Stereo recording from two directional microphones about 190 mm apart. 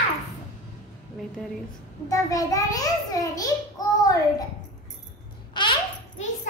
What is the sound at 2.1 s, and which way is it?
A child's voice, 15° left (ahead or behind).